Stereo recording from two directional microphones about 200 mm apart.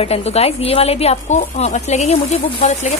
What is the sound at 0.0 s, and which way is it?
Speech, 30° left (ahead or behind).